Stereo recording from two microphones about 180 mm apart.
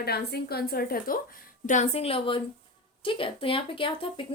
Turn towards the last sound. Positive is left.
turn(degrees=30)  # may be behind; listen again after turning